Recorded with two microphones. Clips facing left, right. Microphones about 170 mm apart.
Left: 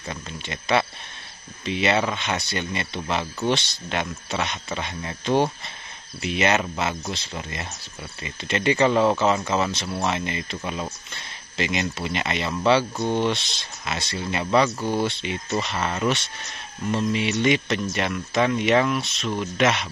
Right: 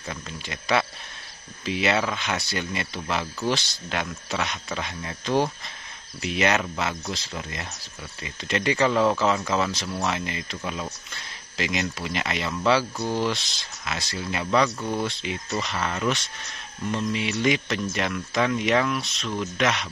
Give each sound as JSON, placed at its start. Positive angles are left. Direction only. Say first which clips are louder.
{"t": 0.1, "sound": "speech", "louder": "left 2 dB", "side_deg": 0}
{"t": 12.9, "sound": "speech", "louder": "left 3 dB", "side_deg": 25}
{"t": 13.3, "sound": "speech", "louder": "left 3 dB", "side_deg": 0}
{"t": 14.8, "sound": "speech", "louder": "left 3 dB", "side_deg": 30}
{"t": 15.0, "sound": "speech", "louder": "left 3 dB", "side_deg": 0}